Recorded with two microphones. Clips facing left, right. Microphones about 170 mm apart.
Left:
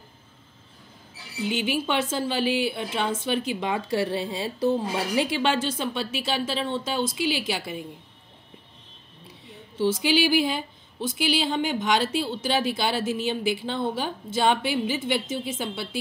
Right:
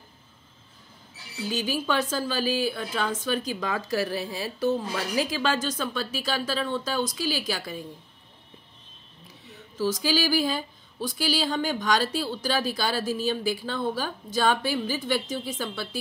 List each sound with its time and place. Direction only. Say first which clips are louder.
1.4 s speech: left 2 dB; 25° left (ahead or behind)
9.5 s speech: left 3 dB; 25° left (ahead or behind)